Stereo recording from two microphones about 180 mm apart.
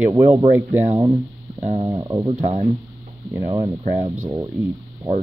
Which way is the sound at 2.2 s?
35° right (ahead or behind).